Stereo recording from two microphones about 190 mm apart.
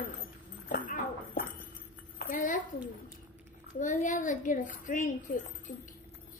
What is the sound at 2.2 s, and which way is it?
Speech, 45° left (ahead or behind).